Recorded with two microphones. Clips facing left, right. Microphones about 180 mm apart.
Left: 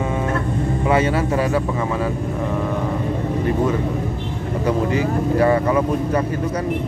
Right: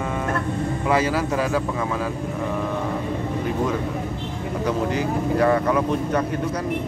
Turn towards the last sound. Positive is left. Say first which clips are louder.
# left 2 dB
turn(degrees=5)  # may be behind; listen again after turning